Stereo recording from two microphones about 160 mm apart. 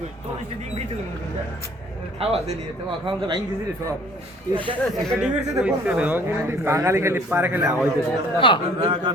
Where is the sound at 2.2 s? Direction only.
40° right (ahead or behind).